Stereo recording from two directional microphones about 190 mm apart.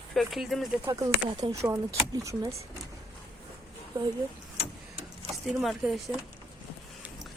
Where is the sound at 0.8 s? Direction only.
20° right (ahead or behind).